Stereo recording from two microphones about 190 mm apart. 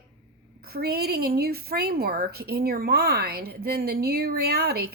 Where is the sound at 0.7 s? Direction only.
55° right (ahead or behind).